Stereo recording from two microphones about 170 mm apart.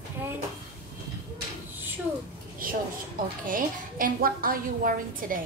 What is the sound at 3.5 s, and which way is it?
A woman's voice, 55° right (ahead or behind).